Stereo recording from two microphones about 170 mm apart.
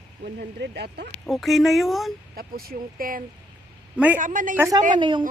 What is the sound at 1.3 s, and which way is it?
Speech, centre (ahead or behind).